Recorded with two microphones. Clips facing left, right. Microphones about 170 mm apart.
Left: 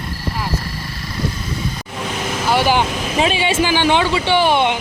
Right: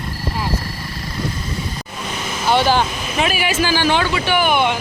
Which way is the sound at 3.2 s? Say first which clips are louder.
Left 2 dB; 25° left (ahead or behind).